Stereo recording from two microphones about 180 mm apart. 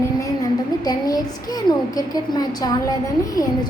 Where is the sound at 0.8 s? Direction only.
20° left (ahead or behind).